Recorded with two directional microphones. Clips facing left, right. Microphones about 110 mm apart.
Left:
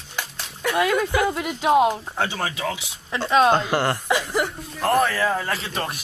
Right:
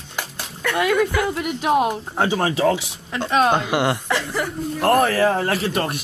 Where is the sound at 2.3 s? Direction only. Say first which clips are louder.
Right 8 dB; 30° right (ahead or behind).